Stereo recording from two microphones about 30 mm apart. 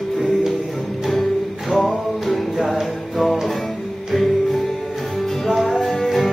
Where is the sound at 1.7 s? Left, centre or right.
Right.